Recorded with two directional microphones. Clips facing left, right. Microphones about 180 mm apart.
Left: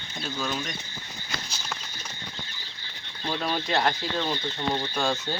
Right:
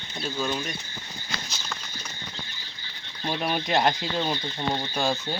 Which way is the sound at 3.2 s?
15° right (ahead or behind).